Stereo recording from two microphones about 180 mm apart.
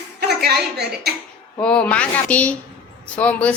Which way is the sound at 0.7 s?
65° right (ahead or behind).